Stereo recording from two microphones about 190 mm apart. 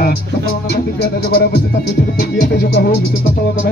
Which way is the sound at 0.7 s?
55° left (ahead or behind).